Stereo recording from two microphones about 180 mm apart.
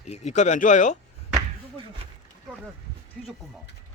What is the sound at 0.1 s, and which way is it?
Speech, 40° left (ahead or behind).